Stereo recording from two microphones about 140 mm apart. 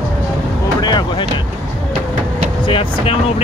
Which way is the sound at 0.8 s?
30° left (ahead or behind).